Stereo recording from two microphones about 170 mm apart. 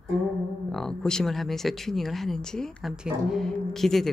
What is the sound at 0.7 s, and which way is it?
Speech, 5° left (ahead or behind).